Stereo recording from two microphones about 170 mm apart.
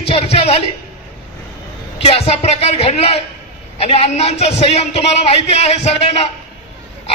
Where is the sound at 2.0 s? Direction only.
35° left (ahead or behind).